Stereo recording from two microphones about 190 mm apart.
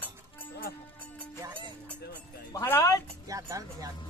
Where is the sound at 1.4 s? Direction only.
15° right (ahead or behind).